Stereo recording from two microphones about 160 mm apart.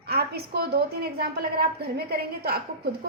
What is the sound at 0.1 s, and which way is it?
A woman's voice, 80° right.